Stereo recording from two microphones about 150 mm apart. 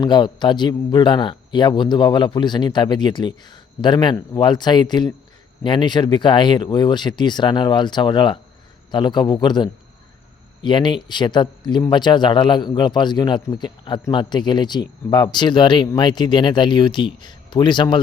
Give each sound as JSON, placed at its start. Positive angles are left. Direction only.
{"t": 0.0, "sound": "a man's voice", "side_deg": 30}